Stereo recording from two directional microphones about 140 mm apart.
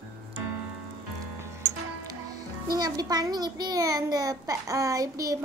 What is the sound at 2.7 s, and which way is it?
A child's voice, 30° right (ahead or behind).